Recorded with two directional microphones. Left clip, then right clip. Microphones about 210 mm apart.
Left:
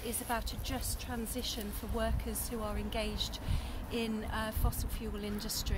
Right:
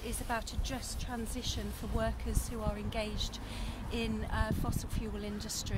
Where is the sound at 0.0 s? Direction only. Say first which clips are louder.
Even; centre (ahead or behind).